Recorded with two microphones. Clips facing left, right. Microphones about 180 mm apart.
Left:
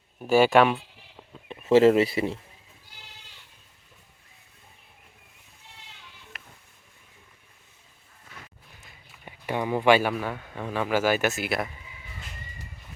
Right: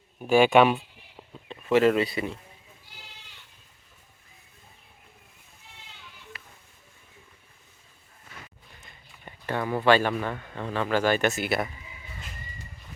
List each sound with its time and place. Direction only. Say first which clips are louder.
0.2 s speech: even; centre (ahead or behind)
1.6 s speech: left 4 dB; 25° left (ahead or behind)
8.8 s speech: even; 5° left (ahead or behind)